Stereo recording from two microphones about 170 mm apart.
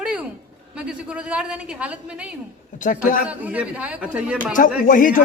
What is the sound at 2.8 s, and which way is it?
Speech, 50° left (ahead or behind).